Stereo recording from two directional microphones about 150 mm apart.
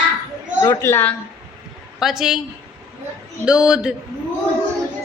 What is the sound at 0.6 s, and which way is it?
Speech, 15° left (ahead or behind).